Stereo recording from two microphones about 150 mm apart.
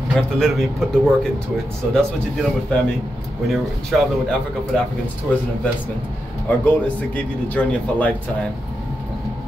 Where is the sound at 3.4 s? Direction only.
Centre (ahead or behind).